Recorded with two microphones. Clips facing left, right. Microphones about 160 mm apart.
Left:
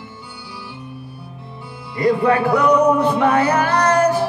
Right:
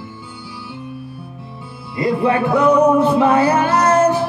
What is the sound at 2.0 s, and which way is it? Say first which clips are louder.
Music: left 1 dB; 25° right (ahead or behind).